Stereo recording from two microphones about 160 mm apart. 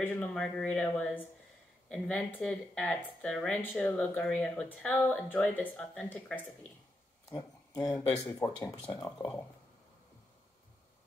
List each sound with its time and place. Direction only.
0.0 s speech: 10° left (ahead or behind)
7.2 s speech: 20° left (ahead or behind)